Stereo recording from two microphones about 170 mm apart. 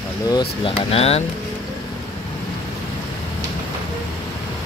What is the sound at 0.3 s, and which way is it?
Speech, 30° left (ahead or behind).